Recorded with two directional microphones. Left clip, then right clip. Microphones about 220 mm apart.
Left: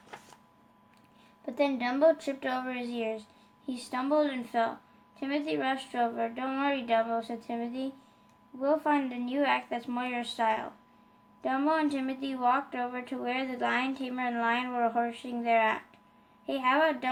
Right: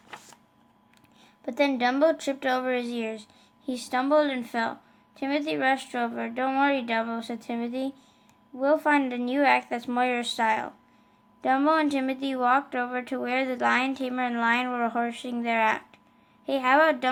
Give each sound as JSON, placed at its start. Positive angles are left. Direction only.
{"t": 1.5, "sound": "speech", "side_deg": -35}